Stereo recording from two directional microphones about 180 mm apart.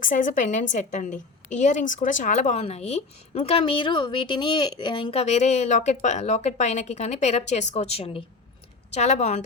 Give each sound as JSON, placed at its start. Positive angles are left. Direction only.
{"t": 0.0, "sound": "a woman's voice", "side_deg": 45}